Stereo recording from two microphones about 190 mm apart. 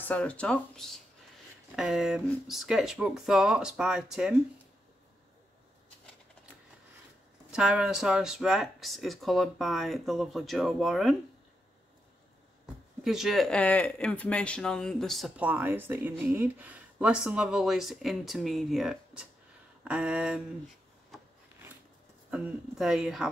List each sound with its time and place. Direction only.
0.0 s speech: 5° left (ahead or behind)
7.5 s speech: 5° right (ahead or behind)
13.0 s speech: centre (ahead or behind)
22.3 s speech: 5° right (ahead or behind)